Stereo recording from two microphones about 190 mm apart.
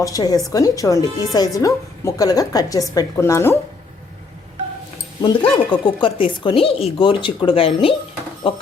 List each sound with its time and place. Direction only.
0.0 s speech: 20° left (ahead or behind)
5.2 s speech: 25° left (ahead or behind)